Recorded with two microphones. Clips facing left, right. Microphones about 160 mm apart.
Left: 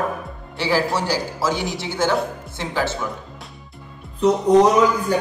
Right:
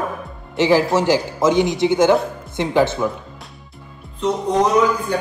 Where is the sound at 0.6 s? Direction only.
20° right (ahead or behind).